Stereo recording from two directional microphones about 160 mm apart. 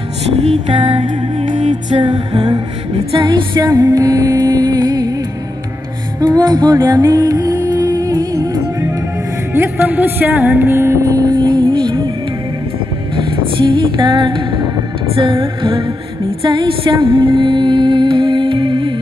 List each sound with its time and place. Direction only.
0.5 s music: 30° right (ahead or behind)
1.5 s music: 50° right (ahead or behind)
1.9 s music: 30° right (ahead or behind)
6.2 s music: 25° right (ahead or behind)
13.1 s music: 30° right (ahead or behind)